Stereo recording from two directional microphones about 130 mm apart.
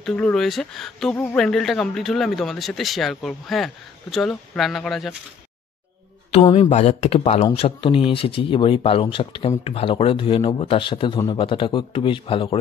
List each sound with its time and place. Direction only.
0.0 s speech: 5° left (ahead or behind)
1.1 s speech: 15° left (ahead or behind)
1.4 s speech: centre (ahead or behind)
6.5 s a man's voice: 55° left (ahead or behind)